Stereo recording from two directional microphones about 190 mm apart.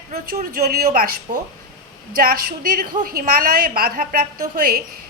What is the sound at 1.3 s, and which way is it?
Speech, 35° right (ahead or behind).